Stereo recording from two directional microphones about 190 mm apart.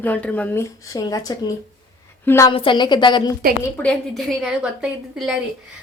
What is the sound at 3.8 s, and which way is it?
Speech, 5° left (ahead or behind).